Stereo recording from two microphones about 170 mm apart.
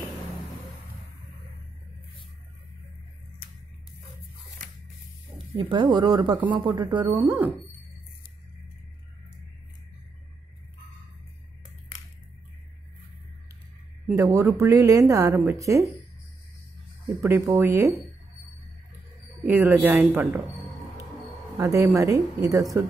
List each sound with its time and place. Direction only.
5.5 s speech: 25° right (ahead or behind)
7.2 s a woman's voice: 10° right (ahead or behind)
14.1 s a woman's voice: 20° right (ahead or behind)
17.0 s a woman's voice: 15° right (ahead or behind)
19.4 s a woman's voice: 10° right (ahead or behind)
21.5 s speech: 20° right (ahead or behind)